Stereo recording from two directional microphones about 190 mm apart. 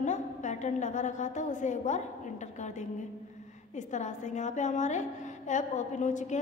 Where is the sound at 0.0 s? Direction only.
40° left (ahead or behind).